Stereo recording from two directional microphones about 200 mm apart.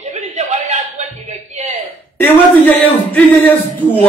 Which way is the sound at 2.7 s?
10° left (ahead or behind).